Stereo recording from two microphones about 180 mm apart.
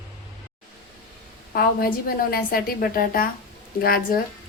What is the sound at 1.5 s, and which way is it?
A woman's voice, 55° left (ahead or behind).